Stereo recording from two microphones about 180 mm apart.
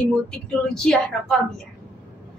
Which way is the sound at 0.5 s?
5° left (ahead or behind).